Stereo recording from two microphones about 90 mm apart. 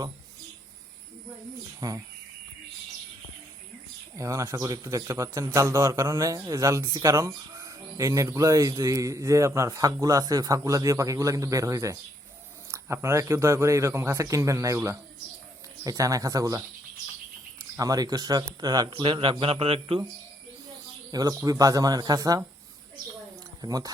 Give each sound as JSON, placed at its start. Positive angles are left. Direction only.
{"t": 1.8, "sound": "a man's voice", "side_deg": -40}
{"t": 4.2, "sound": "a man's voice", "side_deg": -35}
{"t": 17.7, "sound": "speech", "side_deg": -45}
{"t": 18.9, "sound": "a man's voice", "side_deg": -65}
{"t": 21.1, "sound": "speech", "side_deg": -45}
{"t": 23.6, "sound": "speech", "side_deg": -45}